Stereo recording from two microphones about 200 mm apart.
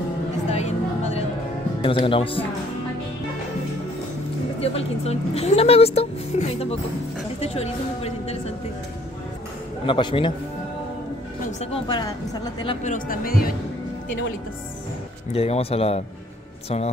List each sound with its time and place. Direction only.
0.5 s a sound: 35° left (ahead or behind)
1.8 s speech: 25° left (ahead or behind)
4.6 s speech: 30° left (ahead or behind)
9.8 s speech: 25° left (ahead or behind)
11.6 s speech: 25° left (ahead or behind)
12.8 s speech: 45° left (ahead or behind)
15.3 s speech: 30° left (ahead or behind)